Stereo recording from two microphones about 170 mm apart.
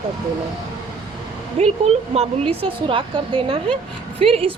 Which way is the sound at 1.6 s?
35° right (ahead or behind).